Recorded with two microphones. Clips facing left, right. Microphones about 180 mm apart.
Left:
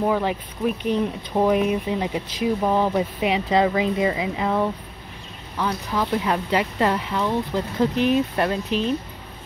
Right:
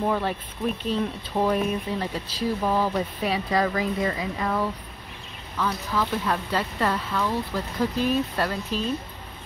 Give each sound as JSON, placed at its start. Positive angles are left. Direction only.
{"t": 0.0, "sound": "speech", "side_deg": 10}